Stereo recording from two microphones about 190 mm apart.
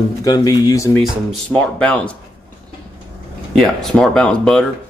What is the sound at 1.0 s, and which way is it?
Speech, centre (ahead or behind).